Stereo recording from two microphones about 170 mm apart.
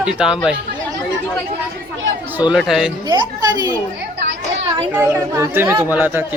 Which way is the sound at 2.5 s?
Centre (ahead or behind).